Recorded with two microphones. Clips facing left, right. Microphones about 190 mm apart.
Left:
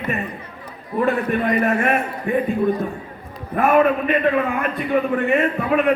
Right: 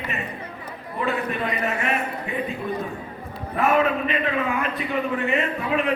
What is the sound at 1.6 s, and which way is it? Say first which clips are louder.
Speech: left 6 dB; 55° left (ahead or behind).